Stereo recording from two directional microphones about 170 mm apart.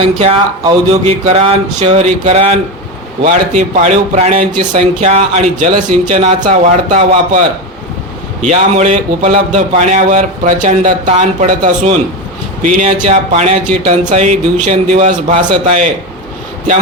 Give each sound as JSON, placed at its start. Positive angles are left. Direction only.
{"t": 0.0, "sound": "speech", "side_deg": -35}